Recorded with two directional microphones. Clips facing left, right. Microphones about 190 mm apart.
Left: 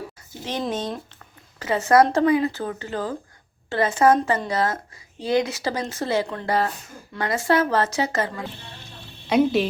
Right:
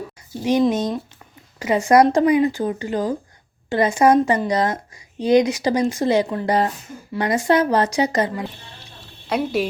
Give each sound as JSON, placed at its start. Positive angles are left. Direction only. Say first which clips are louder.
{"t": 0.7, "sound": "a woman's voice", "louder": "right 6 dB", "side_deg": -10}
{"t": 9.2, "sound": "a woman's voice", "louder": "left 3 dB", "side_deg": 0}